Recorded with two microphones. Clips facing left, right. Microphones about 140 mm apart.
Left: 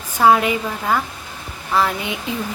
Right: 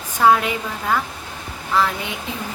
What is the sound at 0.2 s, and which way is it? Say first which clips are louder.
Speech: left 1 dB; 10° left (ahead or behind).